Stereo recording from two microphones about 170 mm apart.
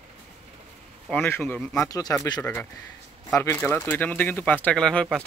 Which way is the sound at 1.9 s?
20° left (ahead or behind).